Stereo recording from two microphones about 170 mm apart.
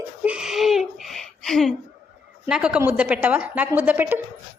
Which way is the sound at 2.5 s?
5° right (ahead or behind).